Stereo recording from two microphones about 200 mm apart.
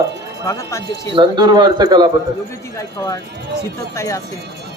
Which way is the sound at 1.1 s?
25° right (ahead or behind).